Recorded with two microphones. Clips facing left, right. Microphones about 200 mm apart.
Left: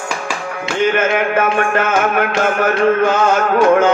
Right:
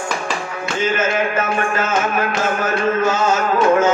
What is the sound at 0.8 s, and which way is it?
Music, 60° left (ahead or behind).